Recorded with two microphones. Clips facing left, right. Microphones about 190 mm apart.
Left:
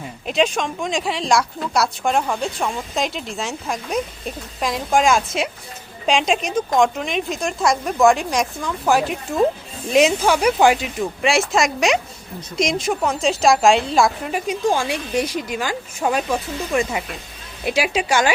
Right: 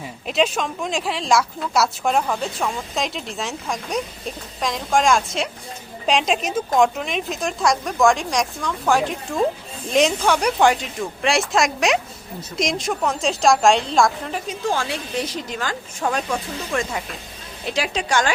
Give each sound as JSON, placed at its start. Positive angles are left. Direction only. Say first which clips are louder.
{"t": 0.3, "sound": "a woman's voice", "louder": "left 1 dB", "side_deg": 0}